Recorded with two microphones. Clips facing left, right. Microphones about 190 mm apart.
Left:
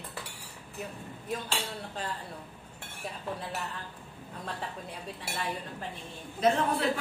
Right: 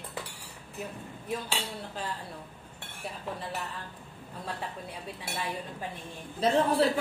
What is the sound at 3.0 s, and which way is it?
Speech, centre (ahead or behind).